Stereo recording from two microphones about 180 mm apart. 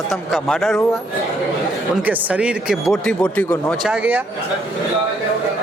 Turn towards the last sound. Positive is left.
turn(degrees=-10)  # may be behind; listen again after turning